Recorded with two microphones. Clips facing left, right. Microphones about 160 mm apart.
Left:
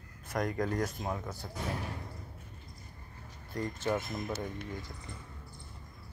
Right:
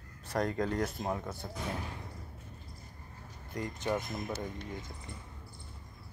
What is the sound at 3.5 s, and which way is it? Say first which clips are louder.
Speech: left 1 dB; 20° right (ahead or behind).